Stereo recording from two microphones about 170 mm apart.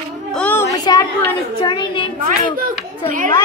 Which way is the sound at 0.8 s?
20° left (ahead or behind).